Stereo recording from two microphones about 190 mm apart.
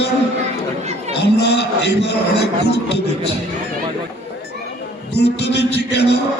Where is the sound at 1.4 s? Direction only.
65° left (ahead or behind).